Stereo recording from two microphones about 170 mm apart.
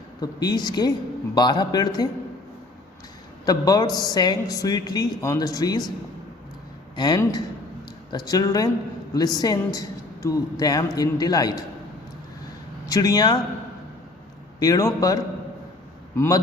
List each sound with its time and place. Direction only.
0.2 s a woman's voice: 25° left (ahead or behind)
3.4 s a woman's voice: 20° left (ahead or behind)
6.9 s a woman's voice: 25° left (ahead or behind)
12.9 s a woman's voice: 20° left (ahead or behind)
14.6 s a woman's voice: 20° left (ahead or behind)